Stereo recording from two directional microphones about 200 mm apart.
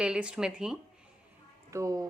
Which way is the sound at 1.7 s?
15° right (ahead or behind).